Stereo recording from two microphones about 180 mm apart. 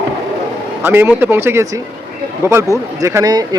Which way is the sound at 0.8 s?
10° right (ahead or behind).